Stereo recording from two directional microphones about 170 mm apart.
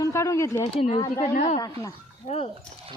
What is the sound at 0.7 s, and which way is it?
Speech, 35° left (ahead or behind).